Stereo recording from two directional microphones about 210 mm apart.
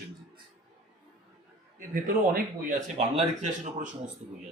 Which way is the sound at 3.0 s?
30° right (ahead or behind).